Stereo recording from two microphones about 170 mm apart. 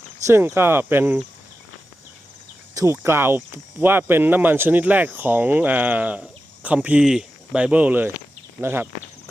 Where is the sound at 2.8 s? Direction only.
15° right (ahead or behind).